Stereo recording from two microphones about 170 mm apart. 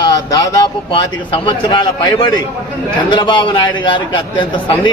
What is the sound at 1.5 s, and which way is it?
A man's voice, 25° left (ahead or behind).